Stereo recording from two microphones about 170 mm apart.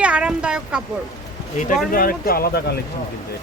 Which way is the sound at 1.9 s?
60° left (ahead or behind).